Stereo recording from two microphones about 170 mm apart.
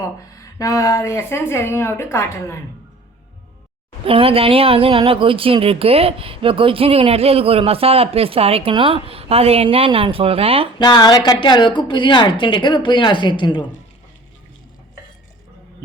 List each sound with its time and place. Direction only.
0.3 s speech: 20° left (ahead or behind)
4.0 s speech: 35° right (ahead or behind)
10.8 s a woman's voice: 25° left (ahead or behind)